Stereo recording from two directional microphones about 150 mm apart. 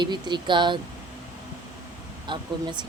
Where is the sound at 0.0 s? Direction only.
30° right (ahead or behind).